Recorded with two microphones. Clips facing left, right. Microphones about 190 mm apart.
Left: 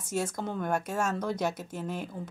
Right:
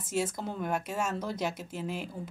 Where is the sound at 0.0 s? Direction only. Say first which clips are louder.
Even; 5° right (ahead or behind).